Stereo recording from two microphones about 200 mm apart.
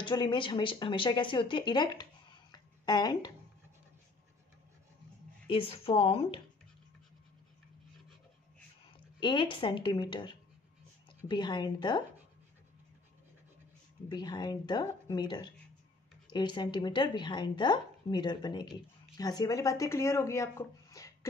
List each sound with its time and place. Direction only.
0.0 s speech: 25° left (ahead or behind)
5.5 s a woman's voice: 25° left (ahead or behind)
9.2 s a woman's voice: 25° left (ahead or behind)
14.1 s a woman's voice: 20° left (ahead or behind)